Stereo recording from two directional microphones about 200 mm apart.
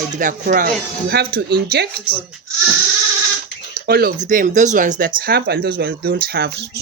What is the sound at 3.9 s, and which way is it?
Speech, 50° right (ahead or behind).